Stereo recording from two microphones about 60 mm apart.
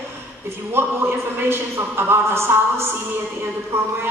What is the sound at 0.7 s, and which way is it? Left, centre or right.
A man's voice, right.